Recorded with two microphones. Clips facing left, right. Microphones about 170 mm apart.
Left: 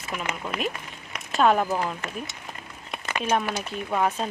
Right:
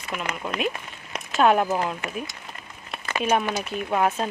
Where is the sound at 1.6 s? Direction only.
15° right (ahead or behind).